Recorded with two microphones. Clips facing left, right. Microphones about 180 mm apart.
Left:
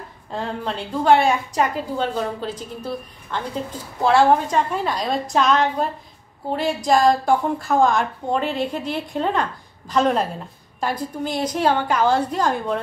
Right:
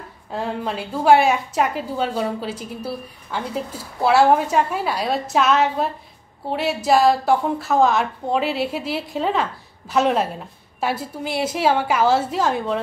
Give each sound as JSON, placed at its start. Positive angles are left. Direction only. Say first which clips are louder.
{"t": 0.3, "sound": "a woman's voice", "louder": "right 1 dB", "side_deg": -5}